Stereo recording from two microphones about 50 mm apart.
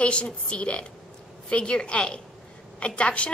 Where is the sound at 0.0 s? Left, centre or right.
Left.